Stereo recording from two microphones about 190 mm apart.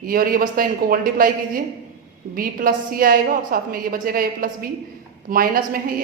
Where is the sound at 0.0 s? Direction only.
50° right (ahead or behind).